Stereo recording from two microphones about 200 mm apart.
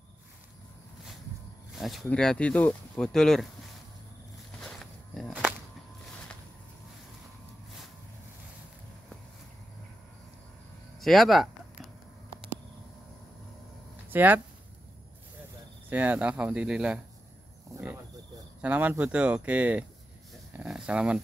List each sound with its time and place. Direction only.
1.8 s speech: centre (ahead or behind)
4.6 s walk: centre (ahead or behind)
11.0 s a sound: centre (ahead or behind)
14.0 s speech: 10° right (ahead or behind)
15.9 s speech: 10° right (ahead or behind)
18.6 s speech: 5° right (ahead or behind)
20.5 s a sound: 5° right (ahead or behind)